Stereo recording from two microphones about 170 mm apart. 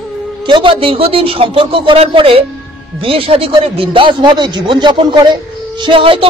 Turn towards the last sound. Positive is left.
turn(degrees=-30)  # may be behind; listen again after turning